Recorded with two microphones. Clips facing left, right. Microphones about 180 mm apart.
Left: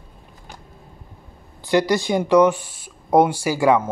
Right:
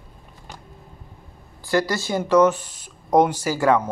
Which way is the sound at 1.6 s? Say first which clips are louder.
Left 4 dB; 20° left (ahead or behind).